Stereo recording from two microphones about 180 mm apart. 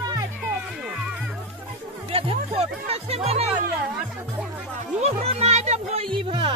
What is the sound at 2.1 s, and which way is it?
Music, 30° right (ahead or behind).